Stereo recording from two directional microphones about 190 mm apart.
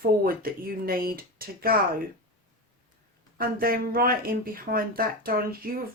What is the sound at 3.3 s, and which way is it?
Speech, 50° right (ahead or behind).